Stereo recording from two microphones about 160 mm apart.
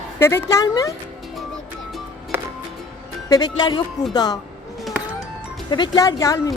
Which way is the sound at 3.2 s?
25° left (ahead or behind).